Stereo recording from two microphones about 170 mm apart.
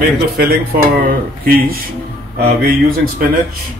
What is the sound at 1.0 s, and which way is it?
Speech, 60° right (ahead or behind).